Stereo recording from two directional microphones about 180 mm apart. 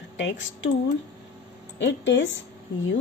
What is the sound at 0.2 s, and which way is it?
Speech, 90° left.